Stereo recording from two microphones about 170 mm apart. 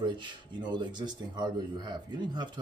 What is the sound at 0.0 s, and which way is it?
A man's voice, 30° right (ahead or behind).